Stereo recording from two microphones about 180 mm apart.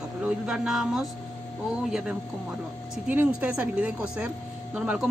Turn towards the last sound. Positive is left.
turn(degrees=-5)  # may be behind; listen again after turning